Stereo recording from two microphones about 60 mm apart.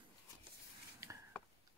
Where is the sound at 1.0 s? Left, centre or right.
Right.